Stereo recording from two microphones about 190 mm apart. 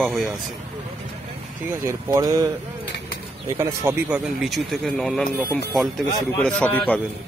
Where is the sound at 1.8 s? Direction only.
15° right (ahead or behind).